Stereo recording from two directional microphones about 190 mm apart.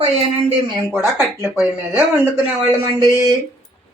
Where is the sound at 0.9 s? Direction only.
10° right (ahead or behind).